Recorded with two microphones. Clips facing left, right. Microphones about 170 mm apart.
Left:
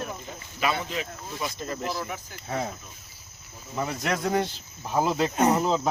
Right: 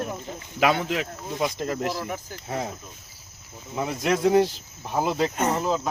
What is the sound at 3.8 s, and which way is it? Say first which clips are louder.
Speech: right 4 dB; 20° right (ahead or behind).